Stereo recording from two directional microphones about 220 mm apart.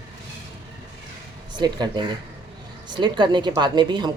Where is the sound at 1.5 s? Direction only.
20° right (ahead or behind).